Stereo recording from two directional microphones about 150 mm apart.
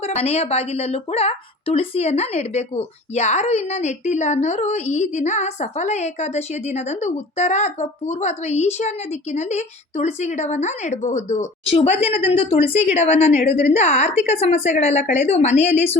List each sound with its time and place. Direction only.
0.1 s a woman's voice: 45° left (ahead or behind)